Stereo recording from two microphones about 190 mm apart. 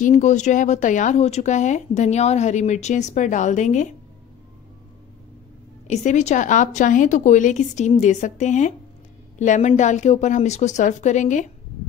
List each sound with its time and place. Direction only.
0.0 s speech: 40° left (ahead or behind)
5.9 s speech: 40° left (ahead or behind)